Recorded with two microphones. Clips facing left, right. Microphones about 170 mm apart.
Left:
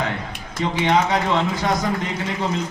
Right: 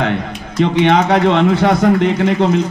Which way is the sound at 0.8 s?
65° right (ahead or behind).